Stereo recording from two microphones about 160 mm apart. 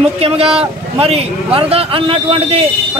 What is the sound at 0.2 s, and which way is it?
A man's voice, 35° right (ahead or behind).